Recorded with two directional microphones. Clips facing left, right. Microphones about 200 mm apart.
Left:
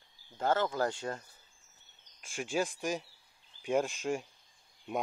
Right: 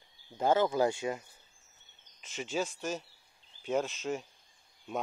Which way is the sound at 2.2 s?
10° left (ahead or behind).